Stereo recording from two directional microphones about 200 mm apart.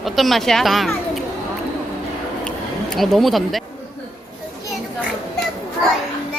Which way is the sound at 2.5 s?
Centre (ahead or behind).